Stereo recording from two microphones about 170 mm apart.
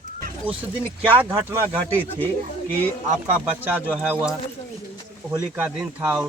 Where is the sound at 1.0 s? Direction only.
10° right (ahead or behind).